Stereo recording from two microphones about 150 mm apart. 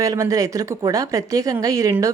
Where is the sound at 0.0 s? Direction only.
25° right (ahead or behind).